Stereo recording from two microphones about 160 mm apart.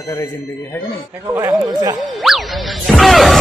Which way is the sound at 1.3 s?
20° right (ahead or behind).